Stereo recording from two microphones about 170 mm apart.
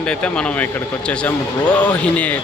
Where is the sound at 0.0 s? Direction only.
5° left (ahead or behind).